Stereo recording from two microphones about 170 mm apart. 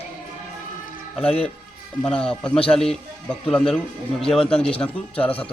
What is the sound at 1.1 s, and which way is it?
A man's voice, 5° left (ahead or behind).